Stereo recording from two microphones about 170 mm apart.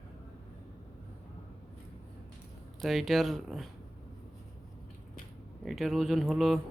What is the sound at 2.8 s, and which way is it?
Speech, centre (ahead or behind).